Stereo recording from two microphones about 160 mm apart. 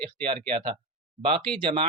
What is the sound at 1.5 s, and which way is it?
Speech, 35° right (ahead or behind).